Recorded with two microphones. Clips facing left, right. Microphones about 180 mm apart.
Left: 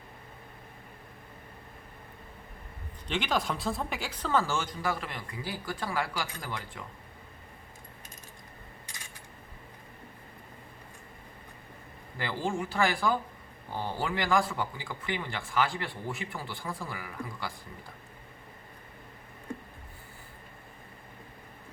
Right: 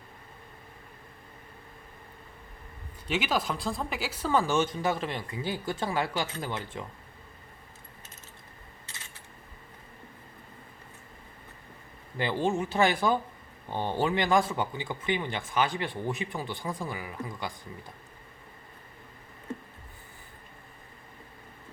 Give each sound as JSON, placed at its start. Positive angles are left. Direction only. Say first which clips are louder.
{"t": 3.1, "sound": "speech", "louder": "right 1 dB", "side_deg": -5}
{"t": 12.1, "sound": "speech", "louder": "right 4 dB", "side_deg": -20}